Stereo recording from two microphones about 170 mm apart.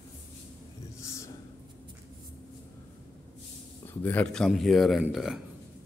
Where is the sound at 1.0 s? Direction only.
15° left (ahead or behind).